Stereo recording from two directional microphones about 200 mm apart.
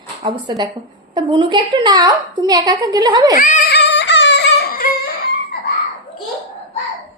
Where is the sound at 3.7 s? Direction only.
60° left (ahead or behind).